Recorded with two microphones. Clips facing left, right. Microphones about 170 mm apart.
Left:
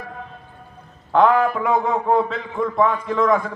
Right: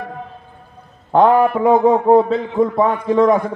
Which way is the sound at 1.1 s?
30° right (ahead or behind).